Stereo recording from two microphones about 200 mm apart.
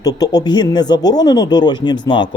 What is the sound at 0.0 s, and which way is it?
Speech, 20° left (ahead or behind).